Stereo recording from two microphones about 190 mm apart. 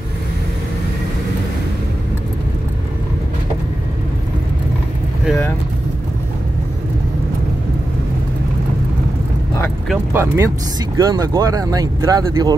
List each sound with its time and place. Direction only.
10.1 s speech: 15° right (ahead or behind)